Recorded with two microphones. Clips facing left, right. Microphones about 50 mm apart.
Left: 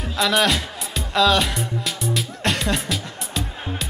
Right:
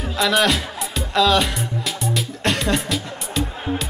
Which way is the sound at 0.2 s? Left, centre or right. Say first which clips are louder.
Right 1 dB; centre.